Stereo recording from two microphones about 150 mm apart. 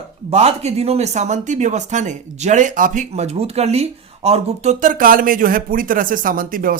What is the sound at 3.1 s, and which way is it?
Speech, 45° right (ahead or behind).